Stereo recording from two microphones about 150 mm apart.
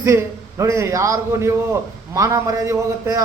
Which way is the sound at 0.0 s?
20° right (ahead or behind).